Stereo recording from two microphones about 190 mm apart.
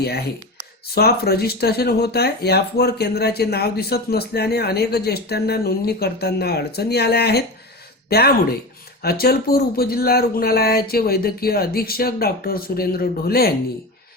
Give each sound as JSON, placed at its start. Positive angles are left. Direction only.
{"t": 0.0, "sound": "speech", "side_deg": 55}